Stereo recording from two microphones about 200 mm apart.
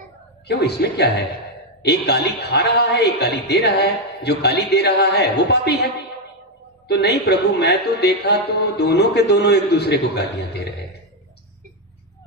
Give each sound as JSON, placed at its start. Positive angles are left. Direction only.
{"t": 0.5, "sound": "a man's voice", "side_deg": 55}
{"t": 6.9, "sound": "a man's voice", "side_deg": 55}